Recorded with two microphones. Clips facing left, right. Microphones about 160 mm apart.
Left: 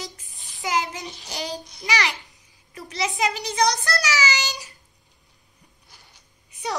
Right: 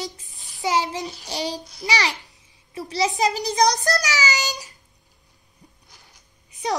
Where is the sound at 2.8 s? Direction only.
35° right (ahead or behind).